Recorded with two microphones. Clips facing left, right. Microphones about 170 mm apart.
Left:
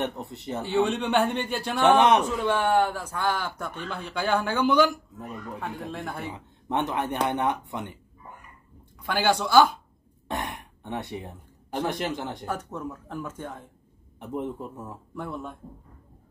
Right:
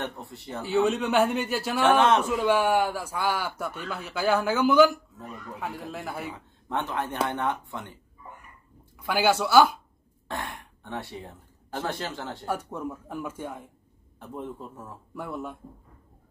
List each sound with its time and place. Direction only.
0.0 s speech: 20° left (ahead or behind)
0.7 s a man's voice: centre (ahead or behind)
1.8 s a man's voice: 20° left (ahead or behind)
2.2 s a man's voice: 10° right (ahead or behind)
6.3 s speech: 20° left (ahead or behind)
9.0 s a man's voice: 5° right (ahead or behind)
10.2 s speech: 20° left (ahead or behind)
12.4 s a man's voice: 10° right (ahead or behind)
14.2 s a man's voice: 20° left (ahead or behind)
15.1 s a man's voice: 10° right (ahead or behind)